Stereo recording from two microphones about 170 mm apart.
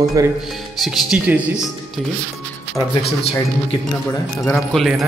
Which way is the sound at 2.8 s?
Centre (ahead or behind).